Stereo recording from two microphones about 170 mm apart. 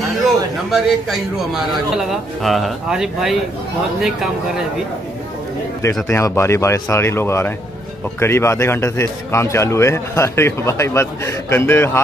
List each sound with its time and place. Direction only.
0.7 s a man's voice: centre (ahead or behind)
6.0 s a man's voice: 15° left (ahead or behind)